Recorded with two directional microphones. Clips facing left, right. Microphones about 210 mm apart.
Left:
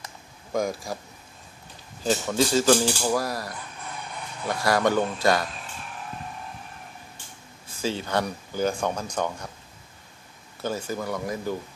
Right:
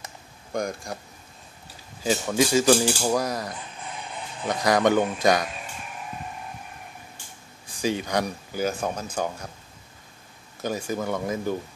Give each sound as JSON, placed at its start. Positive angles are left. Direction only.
{"t": 0.5, "sound": "speech", "side_deg": 0}
{"t": 2.0, "sound": "speech", "side_deg": -10}
{"t": 7.6, "sound": "speech", "side_deg": -15}
{"t": 10.6, "sound": "speech", "side_deg": -15}